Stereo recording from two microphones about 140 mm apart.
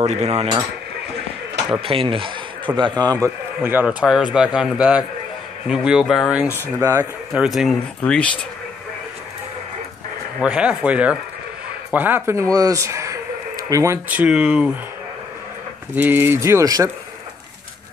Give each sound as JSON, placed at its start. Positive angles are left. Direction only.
{"t": 0.0, "sound": "speech", "side_deg": -50}
{"t": 1.7, "sound": "speech", "side_deg": -40}
{"t": 3.6, "sound": "speech", "side_deg": -10}
{"t": 6.5, "sound": "speech", "side_deg": -20}
{"t": 7.3, "sound": "speech", "side_deg": 0}
{"t": 8.0, "sound": "speech", "side_deg": 10}
{"t": 10.4, "sound": "speech", "side_deg": -5}
{"t": 14.0, "sound": "speech", "side_deg": -10}
{"t": 15.9, "sound": "speech", "side_deg": -15}